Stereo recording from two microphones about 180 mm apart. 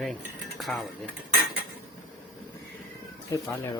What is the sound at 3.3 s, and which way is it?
Speech, 15° left (ahead or behind).